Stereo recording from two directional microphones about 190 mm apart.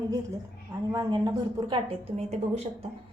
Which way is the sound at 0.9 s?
20° right (ahead or behind).